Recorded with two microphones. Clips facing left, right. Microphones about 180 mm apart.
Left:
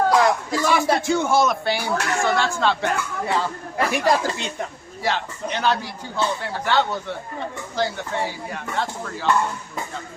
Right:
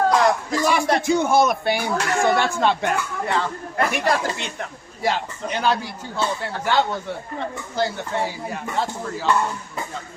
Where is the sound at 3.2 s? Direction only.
10° left (ahead or behind).